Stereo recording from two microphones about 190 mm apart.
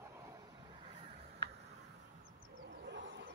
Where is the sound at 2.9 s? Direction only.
70° right (ahead or behind).